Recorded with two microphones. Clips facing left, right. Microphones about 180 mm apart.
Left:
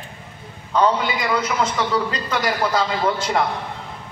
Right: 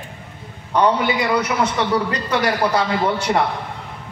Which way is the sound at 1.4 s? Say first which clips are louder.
Right 2 dB; 70° right (ahead or behind).